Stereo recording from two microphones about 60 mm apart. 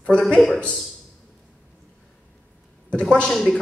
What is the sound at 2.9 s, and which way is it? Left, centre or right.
Speech, centre.